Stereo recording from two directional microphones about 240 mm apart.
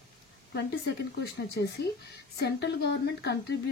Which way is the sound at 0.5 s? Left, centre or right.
Left.